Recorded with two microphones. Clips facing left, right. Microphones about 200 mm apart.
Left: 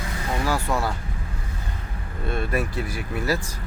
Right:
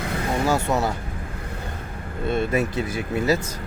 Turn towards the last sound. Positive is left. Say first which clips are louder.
# right 4 dB
turn(degrees=-20)  # may be behind; listen again after turning